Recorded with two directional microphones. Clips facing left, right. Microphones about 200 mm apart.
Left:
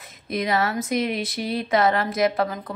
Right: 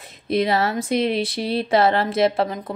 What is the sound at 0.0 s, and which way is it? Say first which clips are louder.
Speech: right 6 dB; 30° right (ahead or behind).